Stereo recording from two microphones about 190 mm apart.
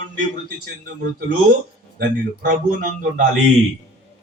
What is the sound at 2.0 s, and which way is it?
A man's voice, 50° right (ahead or behind).